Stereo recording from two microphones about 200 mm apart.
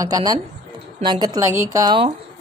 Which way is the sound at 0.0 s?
20° right (ahead or behind).